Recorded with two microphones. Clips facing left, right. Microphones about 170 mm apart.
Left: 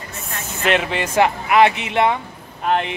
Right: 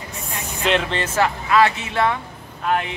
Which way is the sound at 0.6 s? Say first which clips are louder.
Left 1 dB; 5° left (ahead or behind).